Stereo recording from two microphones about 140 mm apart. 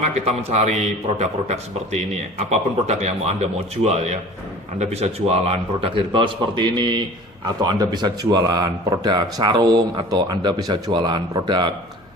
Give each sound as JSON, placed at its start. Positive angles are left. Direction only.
{"t": 0.0, "sound": "a man's voice", "side_deg": -55}